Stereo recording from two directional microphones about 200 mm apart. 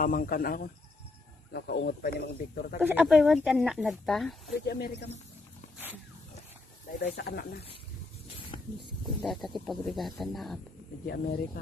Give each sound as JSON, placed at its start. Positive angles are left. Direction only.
{"t": 0.0, "sound": "speech", "side_deg": 45}
{"t": 2.8, "sound": "speech", "side_deg": -5}
{"t": 4.6, "sound": "speech", "side_deg": 55}
{"t": 7.2, "sound": "speech", "side_deg": 55}
{"t": 8.8, "sound": "speech", "side_deg": 0}
{"t": 11.1, "sound": "speech", "side_deg": 50}